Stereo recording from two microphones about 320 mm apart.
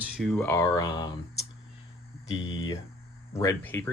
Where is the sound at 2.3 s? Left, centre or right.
Centre.